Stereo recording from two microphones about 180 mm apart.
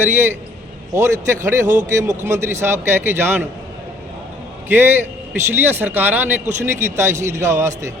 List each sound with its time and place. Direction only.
0.0 s a man's voice: 10° right (ahead or behind)
1.6 s a man's voice: 45° right (ahead or behind)
2.0 s a man's voice: 15° right (ahead or behind)
4.7 s a man's voice: 10° right (ahead or behind)